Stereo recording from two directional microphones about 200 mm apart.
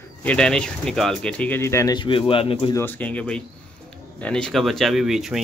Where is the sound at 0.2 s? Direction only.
5° left (ahead or behind); by 2.7 s 25° left (ahead or behind).